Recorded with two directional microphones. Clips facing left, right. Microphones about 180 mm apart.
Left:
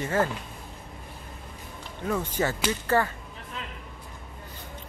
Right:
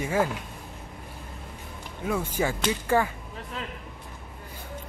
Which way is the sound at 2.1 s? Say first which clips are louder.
Even; 10° right (ahead or behind).